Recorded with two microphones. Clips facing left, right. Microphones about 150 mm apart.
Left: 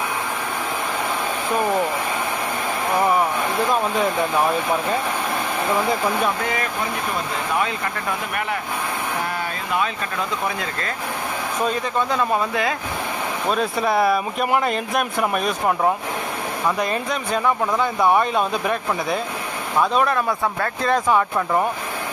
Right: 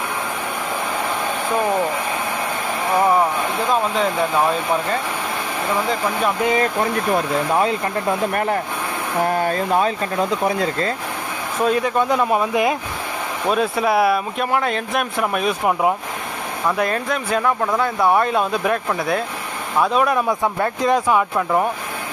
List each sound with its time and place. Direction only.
6.4 s speech: 20° right (ahead or behind)
9.3 s speech: 45° right (ahead or behind); by 10.9 s 30° right (ahead or behind)
11.6 s speech: 5° right (ahead or behind)
13.5 s speech: 5° right (ahead or behind)
20.2 s speech: 15° right (ahead or behind)
21.4 s speech: centre (ahead or behind)